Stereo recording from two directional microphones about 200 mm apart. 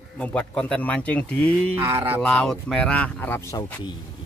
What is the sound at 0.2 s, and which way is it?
Speech, 5° left (ahead or behind).